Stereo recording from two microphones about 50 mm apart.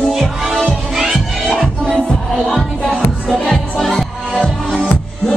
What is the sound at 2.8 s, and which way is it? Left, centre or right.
Music, centre.